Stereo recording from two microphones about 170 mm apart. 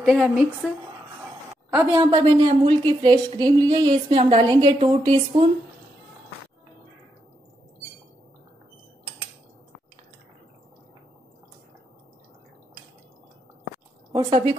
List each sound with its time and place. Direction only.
0.0 s speech: 5° right (ahead or behind)
2.0 s a woman's voice: 25° right (ahead or behind)
14.1 s a woman's voice: 30° right (ahead or behind)